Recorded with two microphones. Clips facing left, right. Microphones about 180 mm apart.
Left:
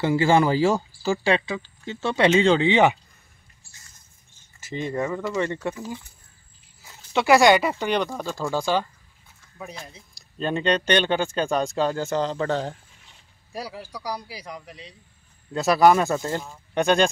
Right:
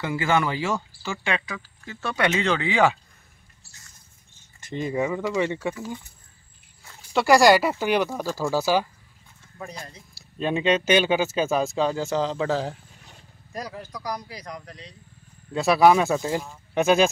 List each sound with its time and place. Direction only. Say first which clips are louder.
0.0 s speech: left 5 dB; 30° left (ahead or behind)
4.6 s speech: right 1 dB; centre (ahead or behind)
7.1 s speech: even; centre (ahead or behind)
9.8 s speech: right 1 dB; 5° left (ahead or behind)
13.5 s speech: even; 10° left (ahead or behind)